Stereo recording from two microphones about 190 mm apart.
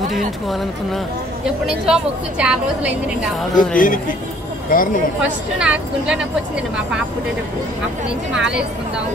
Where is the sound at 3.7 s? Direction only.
45° left (ahead or behind).